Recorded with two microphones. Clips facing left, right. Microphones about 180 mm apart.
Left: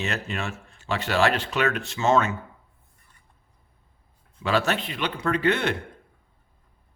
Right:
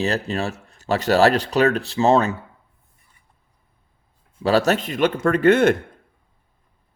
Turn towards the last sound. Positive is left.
turn(degrees=-45)  # may be behind; listen again after turning